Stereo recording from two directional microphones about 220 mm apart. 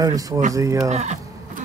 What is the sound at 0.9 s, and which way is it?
Speech, 30° right (ahead or behind).